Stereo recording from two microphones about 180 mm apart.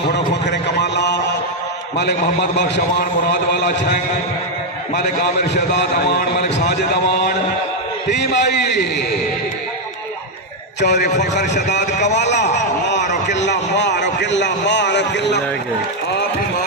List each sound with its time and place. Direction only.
0.1 s a sound: 70° left (ahead or behind)
2.0 s a man's voice: 70° left (ahead or behind)
5.2 s a man's voice: 65° left (ahead or behind)
10.8 s a man's voice: 70° left (ahead or behind)
11.0 s a man's voice: 40° left (ahead or behind)
11.5 s a man's voice: 75° left (ahead or behind)
11.9 s a man's voice: 40° left (ahead or behind)
12.1 s a man's voice: 75° left (ahead or behind)
12.9 s a sound: 75° left (ahead or behind)